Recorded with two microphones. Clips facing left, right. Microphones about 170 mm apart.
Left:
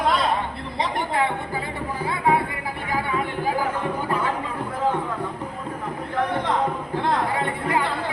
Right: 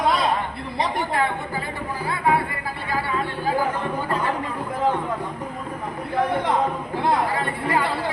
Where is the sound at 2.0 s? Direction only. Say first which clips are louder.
Even; 20° left (ahead or behind).